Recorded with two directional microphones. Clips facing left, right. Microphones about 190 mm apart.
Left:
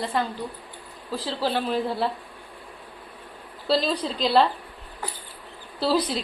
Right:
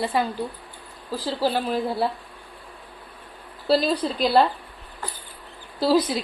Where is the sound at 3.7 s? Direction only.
5° right (ahead or behind).